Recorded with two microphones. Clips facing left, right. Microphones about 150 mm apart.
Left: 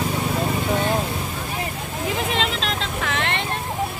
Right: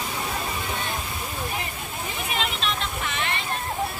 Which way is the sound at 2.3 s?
90° left.